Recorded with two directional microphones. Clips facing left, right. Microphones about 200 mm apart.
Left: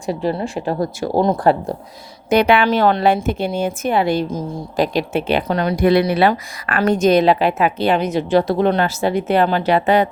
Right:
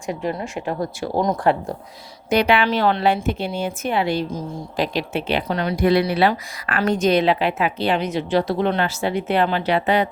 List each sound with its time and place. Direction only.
0.0 s speech: 35° left (ahead or behind)
2.3 s a woman's voice: 50° left (ahead or behind)